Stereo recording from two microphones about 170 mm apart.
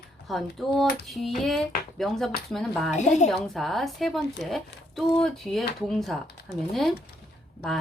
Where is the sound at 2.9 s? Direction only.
45° left (ahead or behind).